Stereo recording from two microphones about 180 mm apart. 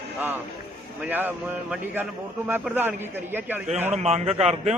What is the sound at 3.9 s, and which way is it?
Speech, 35° right (ahead or behind).